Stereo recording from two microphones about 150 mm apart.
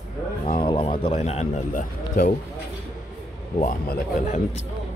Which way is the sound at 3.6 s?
60° left (ahead or behind).